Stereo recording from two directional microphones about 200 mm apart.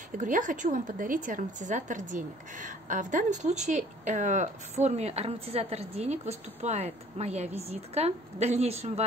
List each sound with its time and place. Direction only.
0.2 s a woman's voice: 40° right (ahead or behind)